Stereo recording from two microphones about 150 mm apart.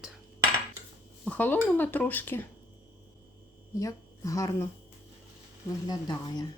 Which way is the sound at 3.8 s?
20° left (ahead or behind).